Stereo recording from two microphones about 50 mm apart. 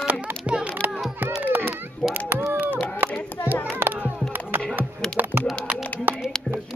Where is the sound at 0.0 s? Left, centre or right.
Right.